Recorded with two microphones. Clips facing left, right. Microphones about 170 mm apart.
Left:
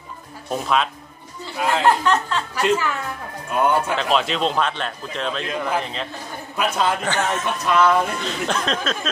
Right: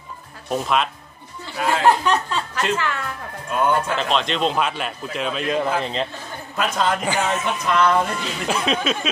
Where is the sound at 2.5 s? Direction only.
10° left (ahead or behind).